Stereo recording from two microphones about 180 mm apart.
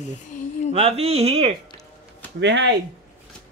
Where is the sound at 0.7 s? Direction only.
35° right (ahead or behind).